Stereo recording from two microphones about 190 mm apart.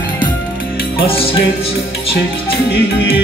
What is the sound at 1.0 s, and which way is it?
Music, 30° left (ahead or behind).